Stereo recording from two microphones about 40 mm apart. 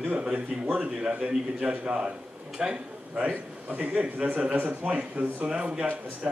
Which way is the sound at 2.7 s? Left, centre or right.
Right.